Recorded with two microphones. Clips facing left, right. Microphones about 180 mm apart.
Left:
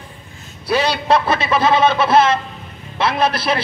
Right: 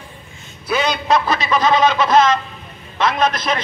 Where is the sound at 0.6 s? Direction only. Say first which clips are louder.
Left 2 dB; 35° left (ahead or behind).